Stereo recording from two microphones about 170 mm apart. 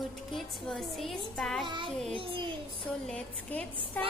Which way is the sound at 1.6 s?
30° right (ahead or behind).